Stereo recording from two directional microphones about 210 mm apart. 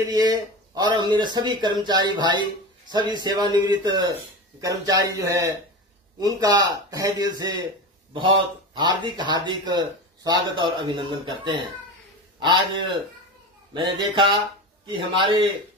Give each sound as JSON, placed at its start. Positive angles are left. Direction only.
{"t": 0.1, "sound": "speech", "side_deg": -20}
{"t": 8.7, "sound": "speech", "side_deg": -20}